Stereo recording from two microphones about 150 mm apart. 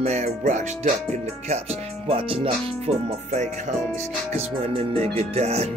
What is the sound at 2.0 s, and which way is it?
Speech, 40° right (ahead or behind).